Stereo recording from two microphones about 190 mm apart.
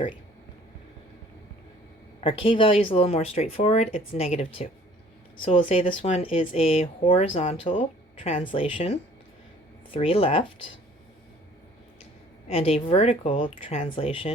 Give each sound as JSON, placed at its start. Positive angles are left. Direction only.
{"t": 2.2, "sound": "speech", "side_deg": 30}
{"t": 12.5, "sound": "speech", "side_deg": 30}